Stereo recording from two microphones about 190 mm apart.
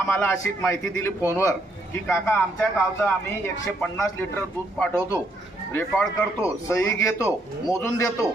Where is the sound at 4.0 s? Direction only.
10° left (ahead or behind).